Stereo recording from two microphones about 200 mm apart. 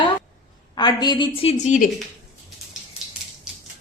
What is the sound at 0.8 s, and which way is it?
A woman's voice, 20° left (ahead or behind).